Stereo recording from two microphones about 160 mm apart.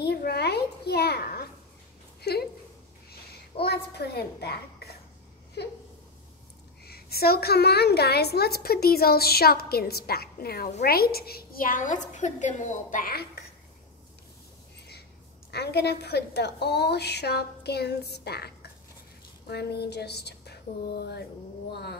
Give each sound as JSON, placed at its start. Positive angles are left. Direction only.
{"t": 0.0, "sound": "a sound", "side_deg": 85}
{"t": 6.8, "sound": "a woman's voice", "side_deg": 75}
{"t": 15.5, "sound": "a woman's voice", "side_deg": 90}